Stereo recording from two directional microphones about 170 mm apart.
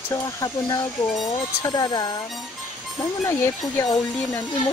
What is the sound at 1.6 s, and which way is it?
Speech, 25° left (ahead or behind).